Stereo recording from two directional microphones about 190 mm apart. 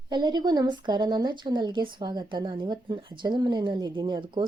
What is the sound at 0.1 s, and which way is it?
Speech, 25° right (ahead or behind).